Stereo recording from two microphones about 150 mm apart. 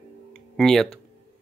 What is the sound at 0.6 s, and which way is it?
Speech, 5° left (ahead or behind).